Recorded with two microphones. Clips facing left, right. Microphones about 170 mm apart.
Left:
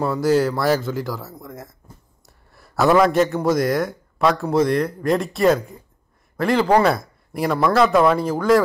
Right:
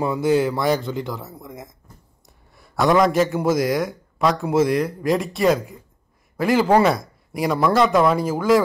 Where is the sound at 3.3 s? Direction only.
5° right (ahead or behind).